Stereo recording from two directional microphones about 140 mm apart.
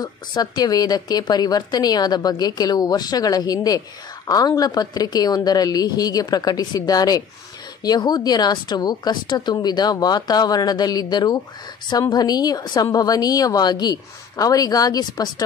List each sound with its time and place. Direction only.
0.0 s a woman's voice: 30° left (ahead or behind)